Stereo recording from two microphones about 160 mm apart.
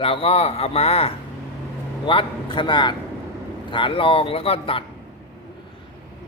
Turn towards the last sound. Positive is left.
turn(degrees=35)  # may be behind; listen again after turning